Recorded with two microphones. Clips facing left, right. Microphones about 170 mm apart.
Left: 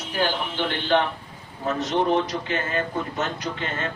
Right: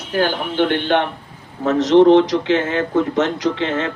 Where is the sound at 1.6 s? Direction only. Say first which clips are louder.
Right 12 dB; 90° right.